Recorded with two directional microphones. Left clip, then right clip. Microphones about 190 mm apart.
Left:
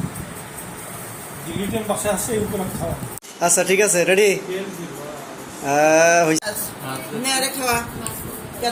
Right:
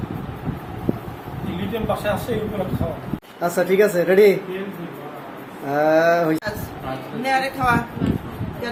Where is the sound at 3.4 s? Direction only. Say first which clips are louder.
Even; 5° left (ahead or behind).